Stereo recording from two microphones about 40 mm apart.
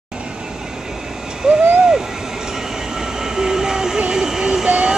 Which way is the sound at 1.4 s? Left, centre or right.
Centre.